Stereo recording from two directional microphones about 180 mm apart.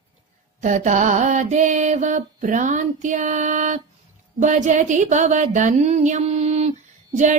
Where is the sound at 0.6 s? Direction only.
45° right (ahead or behind).